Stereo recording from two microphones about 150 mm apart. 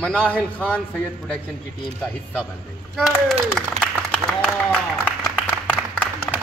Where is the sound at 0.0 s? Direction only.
10° left (ahead or behind).